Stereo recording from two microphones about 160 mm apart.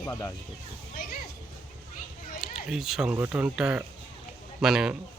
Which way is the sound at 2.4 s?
Centre (ahead or behind).